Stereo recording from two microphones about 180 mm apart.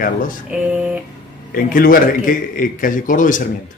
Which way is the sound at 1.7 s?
50° left (ahead or behind).